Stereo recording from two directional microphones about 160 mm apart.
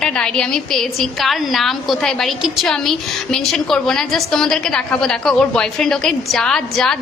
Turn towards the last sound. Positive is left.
turn(degrees=5)  # may be behind; listen again after turning